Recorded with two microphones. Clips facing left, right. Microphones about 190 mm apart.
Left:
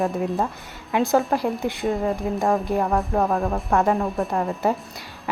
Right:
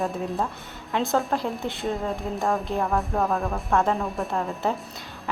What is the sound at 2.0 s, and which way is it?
Speech, centre (ahead or behind).